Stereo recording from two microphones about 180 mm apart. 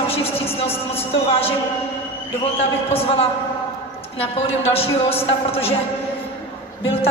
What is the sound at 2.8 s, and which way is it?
Speech, 35° left (ahead or behind).